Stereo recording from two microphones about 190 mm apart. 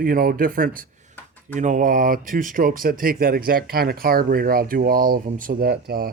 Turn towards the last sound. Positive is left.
turn(degrees=-55)  # may be behind; listen again after turning